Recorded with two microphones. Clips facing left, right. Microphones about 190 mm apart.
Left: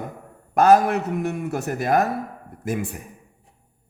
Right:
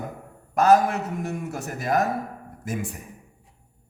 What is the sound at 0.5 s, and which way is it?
Speech, 60° left (ahead or behind).